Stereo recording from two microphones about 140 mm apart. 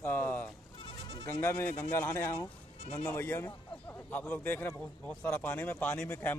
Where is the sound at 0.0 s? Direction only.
15° left (ahead or behind).